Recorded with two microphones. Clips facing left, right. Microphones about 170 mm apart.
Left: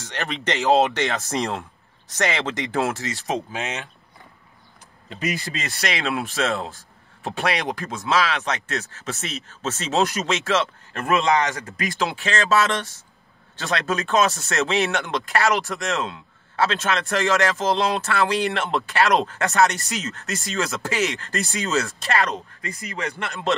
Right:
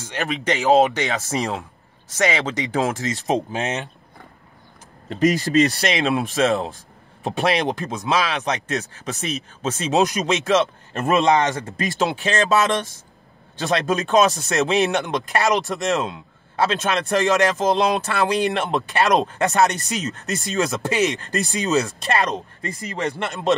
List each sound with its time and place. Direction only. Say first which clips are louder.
0.0 s speech: right 3 dB; 10° right (ahead or behind)
1.0 s speech: right 1 dB; 5° right (ahead or behind); by 3.3 s 20° right (ahead or behind)
5.1 s speech: right 11 dB; 45° right (ahead or behind)
5.9 s speech: right 4 dB; 20° right (ahead or behind)
22.8 s speech: right 5 dB; 30° right (ahead or behind)